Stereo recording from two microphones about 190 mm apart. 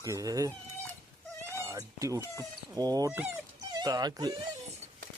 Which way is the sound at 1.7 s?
15° right (ahead or behind).